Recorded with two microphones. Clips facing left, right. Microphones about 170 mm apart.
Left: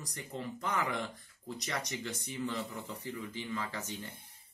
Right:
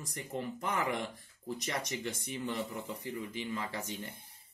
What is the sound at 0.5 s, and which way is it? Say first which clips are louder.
Speech: even; 15° right (ahead or behind).